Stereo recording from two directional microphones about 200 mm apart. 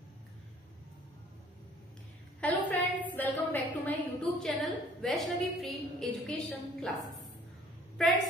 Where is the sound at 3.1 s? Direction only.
10° left (ahead or behind).